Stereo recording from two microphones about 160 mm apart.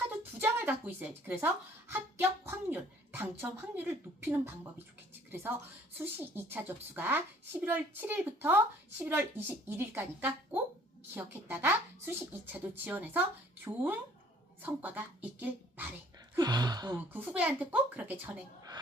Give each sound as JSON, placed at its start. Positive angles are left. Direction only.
{"t": 0.2, "sound": "a woman's voice", "side_deg": -15}
{"t": 16.4, "sound": "speech", "side_deg": -25}
{"t": 17.0, "sound": "speech", "side_deg": -10}